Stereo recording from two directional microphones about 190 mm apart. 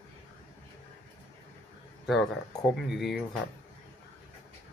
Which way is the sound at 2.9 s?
Centre (ahead or behind).